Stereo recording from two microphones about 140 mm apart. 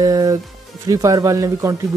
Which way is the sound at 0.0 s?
25° right (ahead or behind).